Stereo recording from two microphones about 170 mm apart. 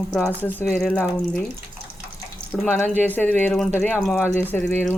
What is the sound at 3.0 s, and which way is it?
Speech, 10° left (ahead or behind).